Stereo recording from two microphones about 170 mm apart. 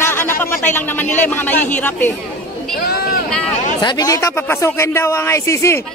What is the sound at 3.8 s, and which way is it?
A man's voice, 20° left (ahead or behind).